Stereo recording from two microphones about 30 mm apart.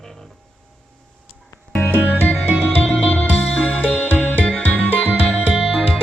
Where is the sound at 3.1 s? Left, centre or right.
Left.